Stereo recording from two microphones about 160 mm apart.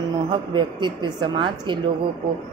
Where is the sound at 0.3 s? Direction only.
30° right (ahead or behind).